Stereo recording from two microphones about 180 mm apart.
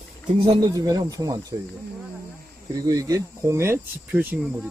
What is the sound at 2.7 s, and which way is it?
Speech, 20° right (ahead or behind).